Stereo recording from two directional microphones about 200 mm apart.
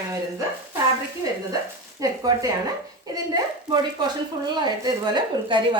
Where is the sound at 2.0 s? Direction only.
15° right (ahead or behind).